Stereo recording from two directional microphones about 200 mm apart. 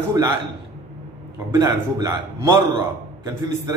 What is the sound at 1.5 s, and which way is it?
A man's voice, 15° right (ahead or behind).